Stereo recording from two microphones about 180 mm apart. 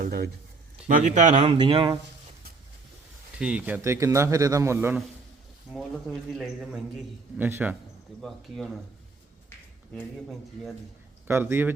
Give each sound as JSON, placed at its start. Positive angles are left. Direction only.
{"t": 0.0, "sound": "speech", "side_deg": -55}
{"t": 0.9, "sound": "a man's voice", "side_deg": -45}
{"t": 1.5, "sound": "speech", "side_deg": -30}
{"t": 3.3, "sound": "speech", "side_deg": -5}
{"t": 5.7, "sound": "speech", "side_deg": 0}
{"t": 8.2, "sound": "speech", "side_deg": 0}
{"t": 11.3, "sound": "speech", "side_deg": -15}